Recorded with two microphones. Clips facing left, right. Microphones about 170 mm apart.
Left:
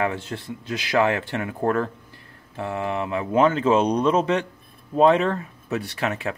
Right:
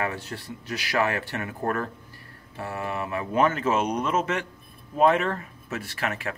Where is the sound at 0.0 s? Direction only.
20° left (ahead or behind).